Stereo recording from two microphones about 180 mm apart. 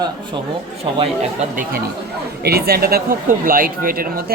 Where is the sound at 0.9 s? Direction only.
35° right (ahead or behind).